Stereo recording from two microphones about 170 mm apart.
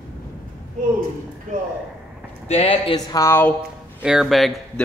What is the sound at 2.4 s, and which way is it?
Speech, 35° left (ahead or behind).